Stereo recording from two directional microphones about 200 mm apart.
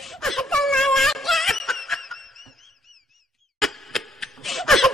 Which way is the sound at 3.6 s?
Centre (ahead or behind).